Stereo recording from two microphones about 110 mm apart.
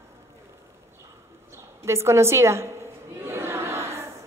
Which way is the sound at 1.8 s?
25° right (ahead or behind).